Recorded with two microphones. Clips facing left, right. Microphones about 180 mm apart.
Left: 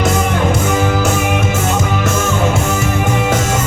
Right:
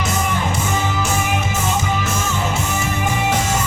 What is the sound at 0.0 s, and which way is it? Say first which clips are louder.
Music: left 6 dB; 60° left (ahead or behind).